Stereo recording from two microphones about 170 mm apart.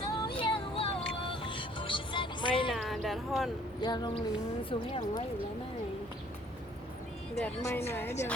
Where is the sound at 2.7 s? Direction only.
Centre (ahead or behind).